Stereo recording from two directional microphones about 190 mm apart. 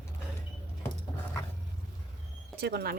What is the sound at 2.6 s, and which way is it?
Speech, 60° right (ahead or behind).